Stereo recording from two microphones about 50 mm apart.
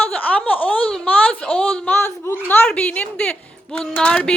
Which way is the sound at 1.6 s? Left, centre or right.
Left.